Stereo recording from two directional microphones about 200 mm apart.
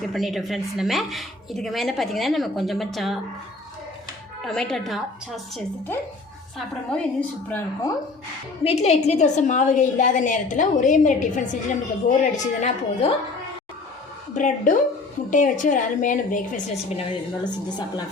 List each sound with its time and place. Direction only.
0.0 s a woman's voice: centre (ahead or behind)
4.4 s a woman's voice: 5° left (ahead or behind)
6.9 s a woman's voice: 10° left (ahead or behind)
8.6 s a woman's voice: 30° left (ahead or behind)
14.3 s a woman's voice: 40° left (ahead or behind); by 18.0 s 20° left (ahead or behind)